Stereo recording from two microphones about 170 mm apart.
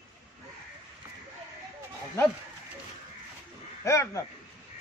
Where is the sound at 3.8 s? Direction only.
15° left (ahead or behind).